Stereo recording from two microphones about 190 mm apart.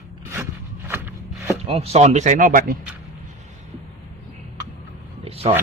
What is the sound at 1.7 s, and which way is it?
Speech, 30° right (ahead or behind).